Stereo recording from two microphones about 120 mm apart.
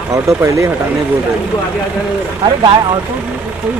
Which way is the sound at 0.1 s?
25° right (ahead or behind).